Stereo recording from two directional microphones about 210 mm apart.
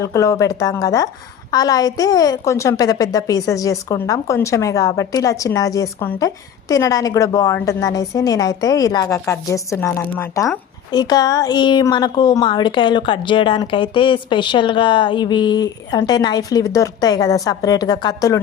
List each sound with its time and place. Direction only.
0.0 s a woman's voice: 15° left (ahead or behind)